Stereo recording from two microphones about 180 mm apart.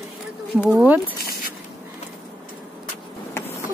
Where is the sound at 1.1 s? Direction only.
55° left (ahead or behind).